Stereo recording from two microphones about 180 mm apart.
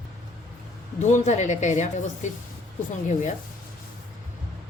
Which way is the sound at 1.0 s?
40° left (ahead or behind).